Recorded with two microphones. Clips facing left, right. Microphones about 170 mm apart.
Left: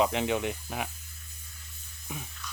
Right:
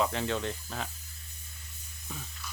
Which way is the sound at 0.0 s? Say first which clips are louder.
Left 3 dB; 15° left (ahead or behind).